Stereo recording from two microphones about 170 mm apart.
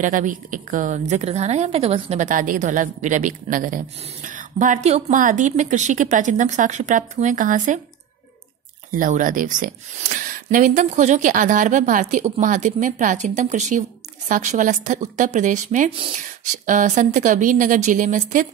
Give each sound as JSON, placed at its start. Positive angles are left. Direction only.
{"t": 0.0, "sound": "a woman's voice", "side_deg": -50}
{"t": 8.9, "sound": "a woman's voice", "side_deg": -50}
{"t": 15.9, "sound": "speech", "side_deg": -30}
{"t": 16.2, "sound": "a woman's voice", "side_deg": -50}